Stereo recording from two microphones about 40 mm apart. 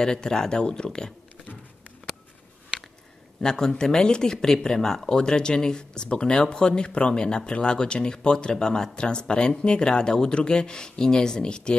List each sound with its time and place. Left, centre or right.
0.0 s speech: centre
3.3 s speech: centre